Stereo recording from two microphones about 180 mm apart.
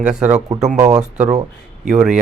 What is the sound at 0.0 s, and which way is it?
Speech, 5° right (ahead or behind).